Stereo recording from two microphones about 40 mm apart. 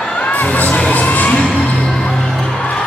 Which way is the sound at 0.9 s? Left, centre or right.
Left.